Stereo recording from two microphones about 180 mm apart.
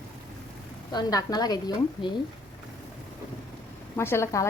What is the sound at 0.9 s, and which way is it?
A woman's voice, 20° left (ahead or behind).